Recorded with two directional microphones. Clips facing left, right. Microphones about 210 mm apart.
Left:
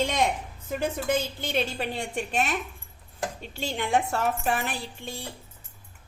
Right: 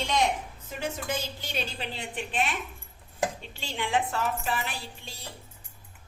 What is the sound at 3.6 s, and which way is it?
A woman's voice, 45° left (ahead or behind).